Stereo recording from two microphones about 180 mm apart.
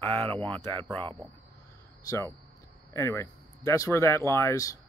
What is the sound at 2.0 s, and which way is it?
Speech, 20° left (ahead or behind).